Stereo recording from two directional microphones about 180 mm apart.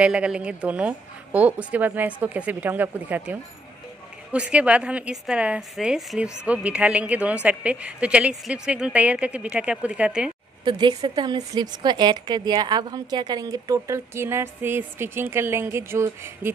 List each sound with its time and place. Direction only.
0.0 s a woman's voice: 5° right (ahead or behind)
10.6 s a woman's voice: 25° right (ahead or behind)